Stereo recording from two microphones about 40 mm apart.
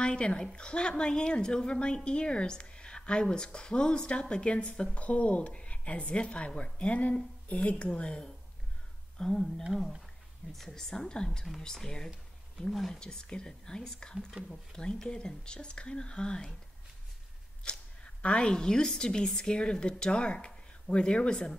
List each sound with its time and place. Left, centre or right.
0.0 s a woman's voice: left
9.2 s a woman's voice: centre
13.0 s speech: left
17.6 s a woman's voice: left